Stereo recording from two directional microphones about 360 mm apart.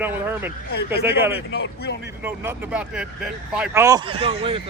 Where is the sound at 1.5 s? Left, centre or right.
Left.